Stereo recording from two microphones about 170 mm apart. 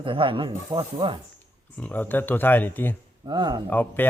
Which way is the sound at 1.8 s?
10° left (ahead or behind).